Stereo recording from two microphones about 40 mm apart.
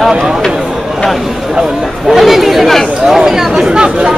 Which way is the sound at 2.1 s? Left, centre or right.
Centre.